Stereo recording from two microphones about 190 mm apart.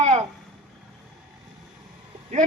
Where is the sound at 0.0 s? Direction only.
35° right (ahead or behind).